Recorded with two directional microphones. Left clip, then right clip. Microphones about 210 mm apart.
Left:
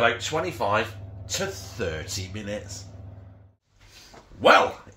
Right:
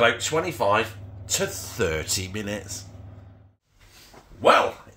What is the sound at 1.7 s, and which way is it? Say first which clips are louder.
Speech: right 5 dB; 40° right (ahead or behind).